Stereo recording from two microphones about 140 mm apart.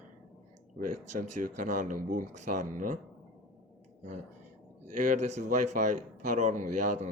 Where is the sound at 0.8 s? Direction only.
70° right (ahead or behind).